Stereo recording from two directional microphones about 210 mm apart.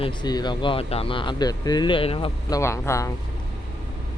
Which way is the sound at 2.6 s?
15° left (ahead or behind).